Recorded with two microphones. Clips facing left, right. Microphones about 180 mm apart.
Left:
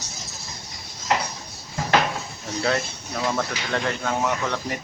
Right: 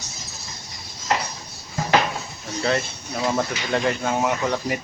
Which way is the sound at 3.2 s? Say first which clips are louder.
Right 2 dB; 15° right (ahead or behind).